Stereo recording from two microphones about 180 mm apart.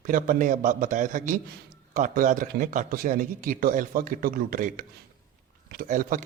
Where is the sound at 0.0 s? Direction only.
50° right (ahead or behind).